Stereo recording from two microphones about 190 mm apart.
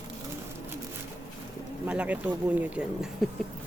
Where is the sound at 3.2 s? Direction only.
Centre (ahead or behind).